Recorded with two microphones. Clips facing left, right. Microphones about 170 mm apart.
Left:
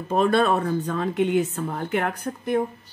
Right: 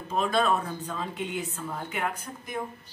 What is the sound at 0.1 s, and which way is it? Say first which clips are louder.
A woman's voice: left 6 dB; 60° left (ahead or behind).